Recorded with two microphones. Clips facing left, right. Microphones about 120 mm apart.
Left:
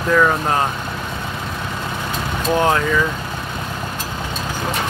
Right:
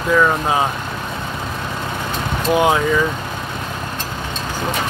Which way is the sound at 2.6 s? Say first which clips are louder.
Right 1 dB; 15° right (ahead or behind).